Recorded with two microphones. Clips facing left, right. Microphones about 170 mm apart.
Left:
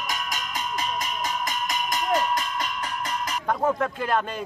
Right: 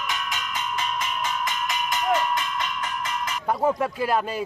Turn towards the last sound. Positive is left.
turn(degrees=-5)  # may be behind; listen again after turning